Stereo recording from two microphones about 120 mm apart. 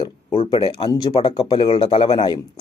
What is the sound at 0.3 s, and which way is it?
Speech, 50° left (ahead or behind).